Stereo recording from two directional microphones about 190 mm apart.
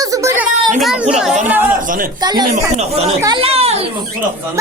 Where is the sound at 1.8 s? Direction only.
45° right (ahead or behind).